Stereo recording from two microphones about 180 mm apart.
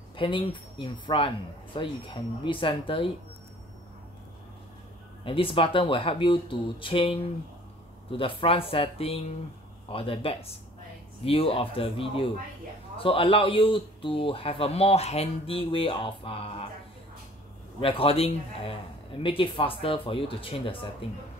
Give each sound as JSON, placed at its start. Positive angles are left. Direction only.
{"t": 0.1, "sound": "speech", "side_deg": 30}
{"t": 5.2, "sound": "a man's voice", "side_deg": 30}
{"t": 17.7, "sound": "a man's voice", "side_deg": 30}